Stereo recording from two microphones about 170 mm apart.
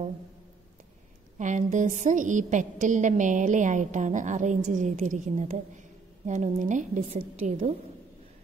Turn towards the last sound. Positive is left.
turn(degrees=-45)  # may be behind; listen again after turning